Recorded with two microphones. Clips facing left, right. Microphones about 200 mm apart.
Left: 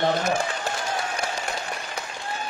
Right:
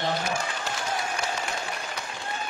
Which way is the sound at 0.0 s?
55° left (ahead or behind).